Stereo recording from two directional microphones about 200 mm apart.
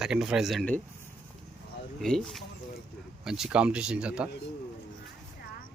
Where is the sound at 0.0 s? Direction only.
5° right (ahead or behind).